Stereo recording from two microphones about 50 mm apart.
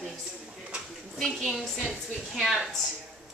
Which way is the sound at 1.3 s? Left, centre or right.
Centre.